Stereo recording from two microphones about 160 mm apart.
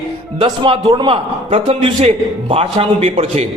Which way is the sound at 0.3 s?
30° right (ahead or behind).